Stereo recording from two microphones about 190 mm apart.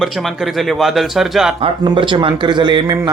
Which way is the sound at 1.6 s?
25° right (ahead or behind).